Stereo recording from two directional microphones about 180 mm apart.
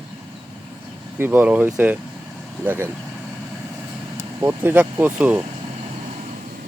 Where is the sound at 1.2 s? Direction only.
10° right (ahead or behind).